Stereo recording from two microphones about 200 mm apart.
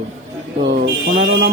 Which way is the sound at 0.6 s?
60° right (ahead or behind).